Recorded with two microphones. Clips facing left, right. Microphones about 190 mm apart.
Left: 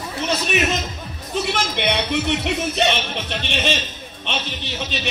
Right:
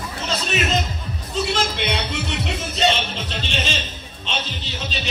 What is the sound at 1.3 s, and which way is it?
Speech, 60° left (ahead or behind).